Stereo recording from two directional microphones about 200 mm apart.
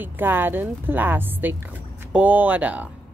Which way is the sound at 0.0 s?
10° right (ahead or behind).